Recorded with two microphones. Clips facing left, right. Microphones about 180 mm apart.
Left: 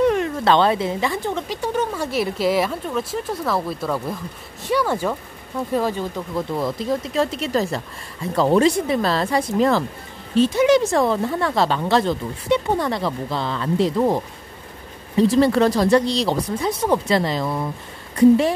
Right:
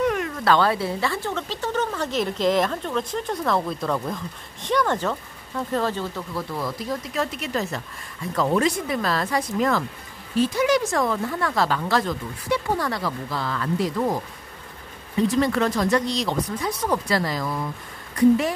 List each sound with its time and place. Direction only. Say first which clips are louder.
0.0 s a woman's voice: left 5 dB; 30° left (ahead or behind)